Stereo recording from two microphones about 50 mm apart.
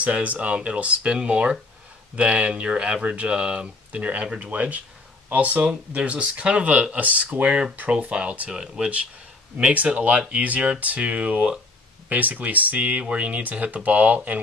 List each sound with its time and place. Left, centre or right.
0.0 s speech: right
8.5 s speech: centre
9.8 s speech: right